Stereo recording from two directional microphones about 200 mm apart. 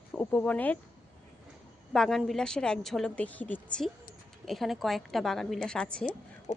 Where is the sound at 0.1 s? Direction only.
10° left (ahead or behind).